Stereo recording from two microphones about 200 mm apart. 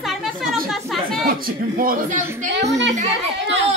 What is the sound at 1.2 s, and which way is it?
Speech, 45° right (ahead or behind).